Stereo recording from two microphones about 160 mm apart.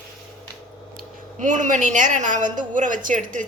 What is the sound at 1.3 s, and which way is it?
A woman's voice, 50° right (ahead or behind).